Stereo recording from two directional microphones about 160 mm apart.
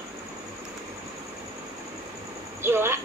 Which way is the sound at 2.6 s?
15° right (ahead or behind).